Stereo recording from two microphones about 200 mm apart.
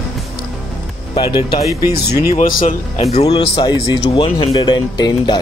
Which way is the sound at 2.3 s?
45° left (ahead or behind).